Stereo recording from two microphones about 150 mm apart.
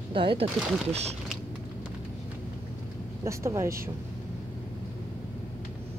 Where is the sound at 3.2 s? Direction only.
20° right (ahead or behind).